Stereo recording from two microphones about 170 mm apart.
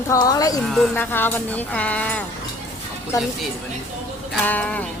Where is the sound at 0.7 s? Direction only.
5° left (ahead or behind).